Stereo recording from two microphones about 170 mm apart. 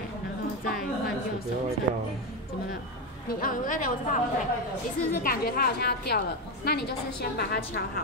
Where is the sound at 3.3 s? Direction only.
55° left (ahead or behind).